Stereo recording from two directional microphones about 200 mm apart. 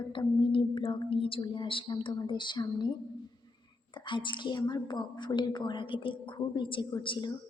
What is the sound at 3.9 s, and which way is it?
A woman's voice, 25° left (ahead or behind).